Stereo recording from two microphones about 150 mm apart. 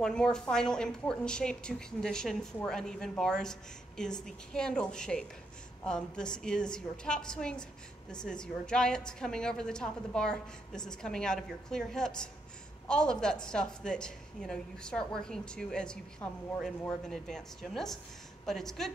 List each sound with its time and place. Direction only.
0.0 s a woman's voice: 5° left (ahead or behind)